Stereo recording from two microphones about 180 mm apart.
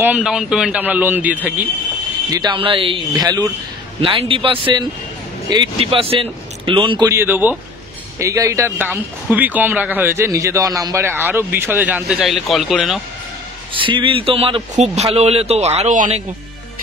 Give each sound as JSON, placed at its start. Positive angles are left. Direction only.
{"t": 0.0, "sound": "speech", "side_deg": -5}
{"t": 2.3, "sound": "speech", "side_deg": -25}
{"t": 13.7, "sound": "speech", "side_deg": -30}